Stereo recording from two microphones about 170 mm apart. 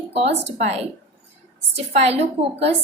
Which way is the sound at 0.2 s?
40° right (ahead or behind).